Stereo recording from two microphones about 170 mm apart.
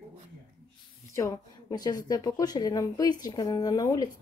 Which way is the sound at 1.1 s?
20° left (ahead or behind).